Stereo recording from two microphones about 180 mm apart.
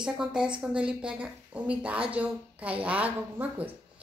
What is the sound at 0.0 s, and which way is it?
A woman's voice, 5° right (ahead or behind).